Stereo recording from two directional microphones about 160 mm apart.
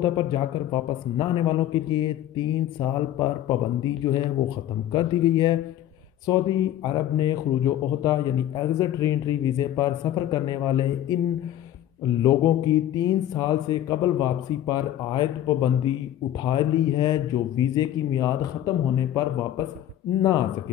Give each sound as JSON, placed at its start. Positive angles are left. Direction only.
{"t": 0.0, "sound": "speech", "side_deg": 30}
{"t": 4.9, "sound": "speech", "side_deg": 25}
{"t": 12.2, "sound": "speech", "side_deg": 20}